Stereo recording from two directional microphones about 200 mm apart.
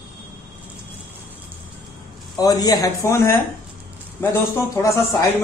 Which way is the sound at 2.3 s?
20° left (ahead or behind).